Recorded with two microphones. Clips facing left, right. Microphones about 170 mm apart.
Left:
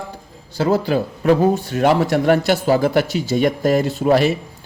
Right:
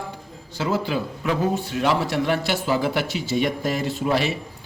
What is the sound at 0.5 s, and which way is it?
A man's voice, 40° left (ahead or behind).